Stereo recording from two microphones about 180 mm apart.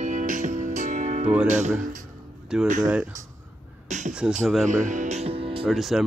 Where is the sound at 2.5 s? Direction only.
5° right (ahead or behind).